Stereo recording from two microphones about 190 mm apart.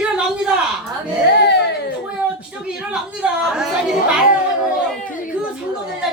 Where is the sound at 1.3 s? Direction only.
60° left (ahead or behind).